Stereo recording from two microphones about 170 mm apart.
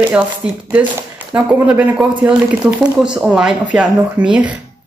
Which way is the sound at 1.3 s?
10° right (ahead or behind).